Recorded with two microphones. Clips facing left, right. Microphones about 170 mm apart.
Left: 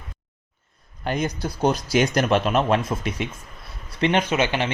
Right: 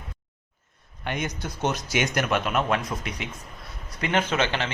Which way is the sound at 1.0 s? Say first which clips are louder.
Left 5 dB; 35° left (ahead or behind).